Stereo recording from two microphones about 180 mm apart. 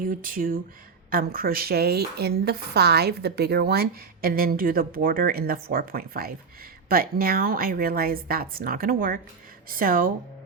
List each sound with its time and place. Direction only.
0.0 s a woman's voice: 50° right (ahead or behind)